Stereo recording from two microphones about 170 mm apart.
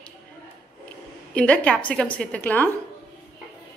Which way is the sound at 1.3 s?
5° left (ahead or behind).